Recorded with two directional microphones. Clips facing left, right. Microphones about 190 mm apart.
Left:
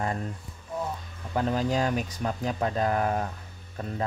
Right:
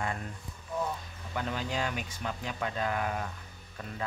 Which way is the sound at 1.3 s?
40° left (ahead or behind).